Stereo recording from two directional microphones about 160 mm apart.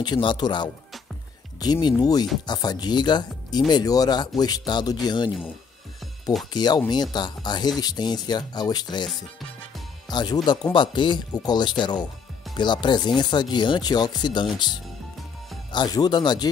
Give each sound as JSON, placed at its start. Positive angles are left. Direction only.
{"t": 0.0, "sound": "speech", "side_deg": 30}
{"t": 6.5, "sound": "speech", "side_deg": 25}